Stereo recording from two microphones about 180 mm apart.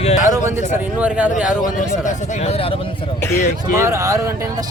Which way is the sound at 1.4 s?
45° left (ahead or behind).